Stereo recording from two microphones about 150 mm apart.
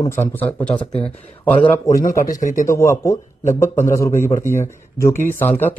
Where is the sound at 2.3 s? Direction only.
60° left (ahead or behind).